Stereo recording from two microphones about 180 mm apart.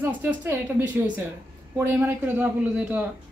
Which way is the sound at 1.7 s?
15° right (ahead or behind).